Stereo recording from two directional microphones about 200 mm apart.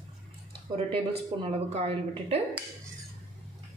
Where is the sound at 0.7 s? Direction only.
30° right (ahead or behind).